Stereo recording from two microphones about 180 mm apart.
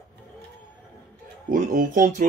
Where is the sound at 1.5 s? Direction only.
50° right (ahead or behind).